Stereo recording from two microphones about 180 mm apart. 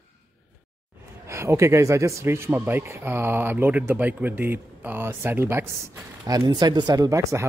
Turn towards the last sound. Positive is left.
turn(degrees=-15)  # may be behind; listen again after turning